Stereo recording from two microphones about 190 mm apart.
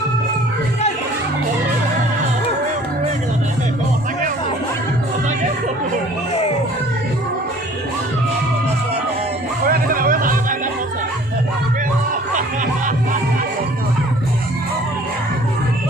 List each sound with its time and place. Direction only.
9.6 s music: 50° right (ahead or behind)